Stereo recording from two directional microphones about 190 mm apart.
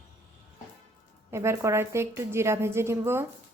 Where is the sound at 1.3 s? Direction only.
15° right (ahead or behind).